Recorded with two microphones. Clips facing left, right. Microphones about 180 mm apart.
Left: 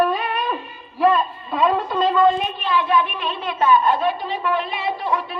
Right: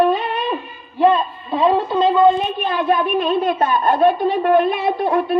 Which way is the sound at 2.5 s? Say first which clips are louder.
Right 2 dB; 45° right (ahead or behind).